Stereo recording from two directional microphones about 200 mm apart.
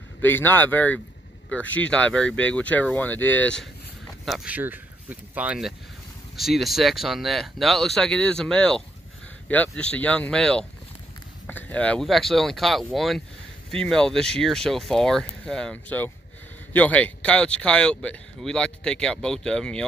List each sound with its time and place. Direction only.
0.2 s speech: 10° left (ahead or behind)
4.3 s speech: 10° right (ahead or behind)